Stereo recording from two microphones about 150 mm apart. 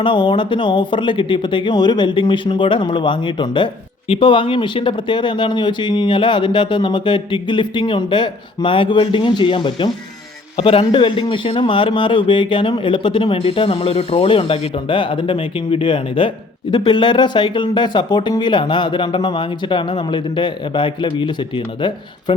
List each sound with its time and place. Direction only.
0.0 s speech: 30° left (ahead or behind)